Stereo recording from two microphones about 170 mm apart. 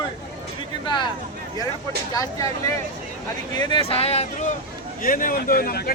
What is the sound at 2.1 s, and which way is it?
Speech, 20° left (ahead or behind).